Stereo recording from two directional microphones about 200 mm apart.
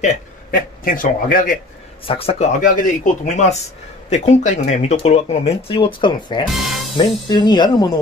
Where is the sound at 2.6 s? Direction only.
40° left (ahead or behind); by 6.4 s 25° left (ahead or behind).